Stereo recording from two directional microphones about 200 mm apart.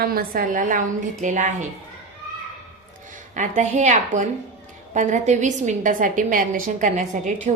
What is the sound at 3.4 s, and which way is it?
A woman's voice, 35° right (ahead or behind).